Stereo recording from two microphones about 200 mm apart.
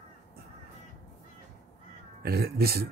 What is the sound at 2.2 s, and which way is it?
Speech, 50° right (ahead or behind).